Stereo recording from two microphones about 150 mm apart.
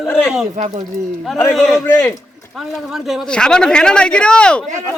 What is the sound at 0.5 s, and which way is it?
Speech, 50° right (ahead or behind).